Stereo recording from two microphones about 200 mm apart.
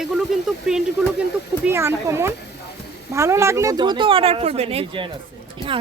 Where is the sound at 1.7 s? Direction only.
10° right (ahead or behind).